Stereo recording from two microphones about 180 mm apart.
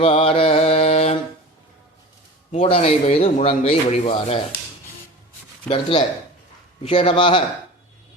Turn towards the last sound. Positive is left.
turn(degrees=30)  # may be behind; listen again after turning